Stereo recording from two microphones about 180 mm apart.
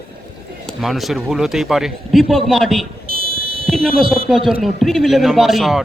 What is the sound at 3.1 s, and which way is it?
Fire alarm, 30° right (ahead or behind).